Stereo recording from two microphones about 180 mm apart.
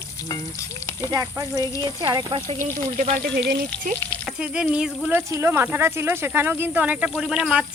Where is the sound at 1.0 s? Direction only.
15° right (ahead or behind).